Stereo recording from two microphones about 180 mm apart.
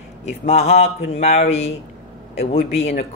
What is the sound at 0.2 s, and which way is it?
Speech, 35° left (ahead or behind).